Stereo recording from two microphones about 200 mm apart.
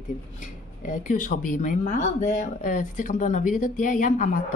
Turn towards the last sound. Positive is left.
turn(degrees=40)  # may be behind; listen again after turning